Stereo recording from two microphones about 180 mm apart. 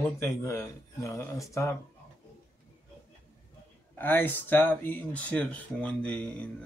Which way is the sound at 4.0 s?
10° left (ahead or behind).